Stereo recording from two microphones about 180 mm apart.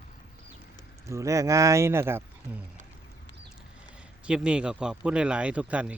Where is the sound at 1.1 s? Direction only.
15° right (ahead or behind).